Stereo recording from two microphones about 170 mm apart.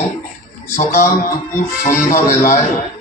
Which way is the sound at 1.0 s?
50° left (ahead or behind).